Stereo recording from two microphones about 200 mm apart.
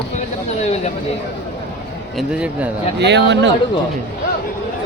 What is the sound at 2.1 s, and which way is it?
Speech, 5° right (ahead or behind).